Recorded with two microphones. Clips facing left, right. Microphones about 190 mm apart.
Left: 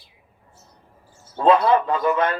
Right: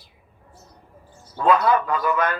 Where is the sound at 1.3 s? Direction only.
25° left (ahead or behind).